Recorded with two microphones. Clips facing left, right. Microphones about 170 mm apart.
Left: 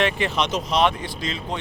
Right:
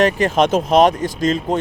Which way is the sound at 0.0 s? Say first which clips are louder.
Right 8 dB; 45° right (ahead or behind).